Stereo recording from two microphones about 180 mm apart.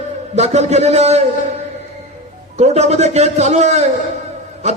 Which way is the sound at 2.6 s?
40° right (ahead or behind).